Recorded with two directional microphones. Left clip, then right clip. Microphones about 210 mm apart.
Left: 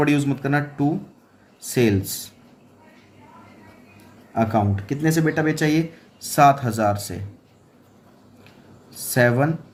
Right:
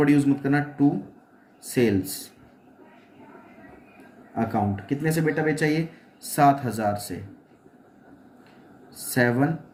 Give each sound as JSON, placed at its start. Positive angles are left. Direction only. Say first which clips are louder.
{"t": 0.0, "sound": "speech", "louder": "even", "side_deg": 50}
{"t": 4.4, "sound": "speech", "louder": "left 5 dB", "side_deg": 55}
{"t": 9.1, "sound": "speech", "louder": "left 4 dB", "side_deg": 50}